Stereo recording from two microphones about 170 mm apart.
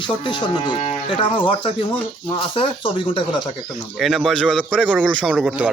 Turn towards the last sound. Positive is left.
turn(degrees=-5)  # may be behind; listen again after turning